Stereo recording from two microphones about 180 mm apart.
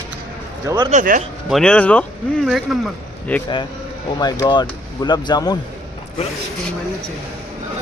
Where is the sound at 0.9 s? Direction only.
45° right (ahead or behind).